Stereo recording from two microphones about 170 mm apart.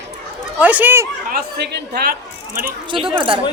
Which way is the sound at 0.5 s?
10° right (ahead or behind).